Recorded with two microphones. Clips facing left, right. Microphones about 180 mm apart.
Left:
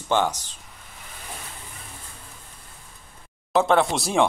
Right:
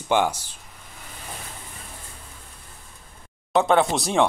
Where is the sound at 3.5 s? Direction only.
Centre (ahead or behind).